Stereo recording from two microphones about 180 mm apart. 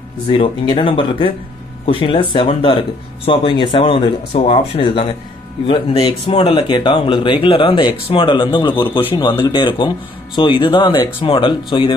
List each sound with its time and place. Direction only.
0.3 s speech: 25° left (ahead or behind)